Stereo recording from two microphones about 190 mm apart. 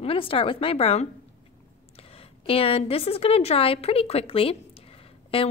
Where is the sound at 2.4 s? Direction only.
30° left (ahead or behind).